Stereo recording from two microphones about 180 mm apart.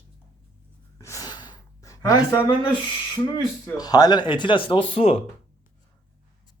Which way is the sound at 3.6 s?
20° left (ahead or behind).